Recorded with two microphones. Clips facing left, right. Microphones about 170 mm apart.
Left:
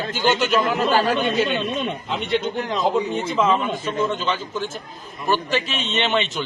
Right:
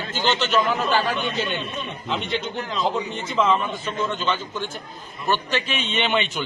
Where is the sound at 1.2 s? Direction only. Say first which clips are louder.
Left 6 dB; 80° left.